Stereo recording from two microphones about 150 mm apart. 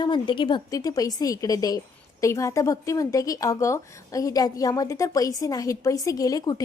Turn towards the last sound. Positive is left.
turn(degrees=25)  # may be behind; listen again after turning